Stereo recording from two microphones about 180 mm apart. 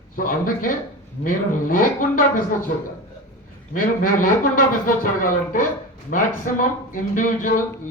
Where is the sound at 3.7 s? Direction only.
50° left (ahead or behind).